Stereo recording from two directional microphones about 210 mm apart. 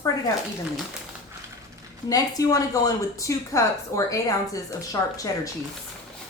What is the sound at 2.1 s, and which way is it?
Speech, 15° left (ahead or behind).